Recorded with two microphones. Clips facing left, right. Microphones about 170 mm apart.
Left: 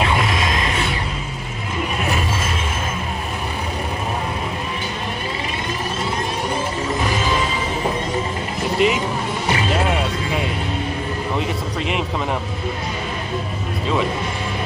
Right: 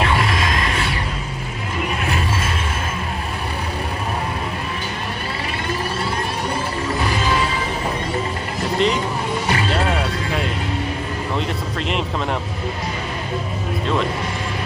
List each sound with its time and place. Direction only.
0.0 s a sound: 20° left (ahead or behind)
8.7 s vehicle: 10° left (ahead or behind)
9.5 s music: 10° left (ahead or behind)